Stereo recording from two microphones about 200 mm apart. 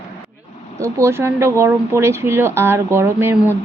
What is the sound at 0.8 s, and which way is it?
Speech, 15° right (ahead or behind).